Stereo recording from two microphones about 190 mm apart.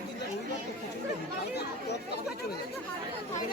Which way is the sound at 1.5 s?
60° left (ahead or behind).